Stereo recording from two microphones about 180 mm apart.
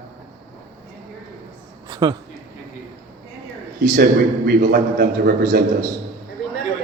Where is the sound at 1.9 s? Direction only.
20° right (ahead or behind).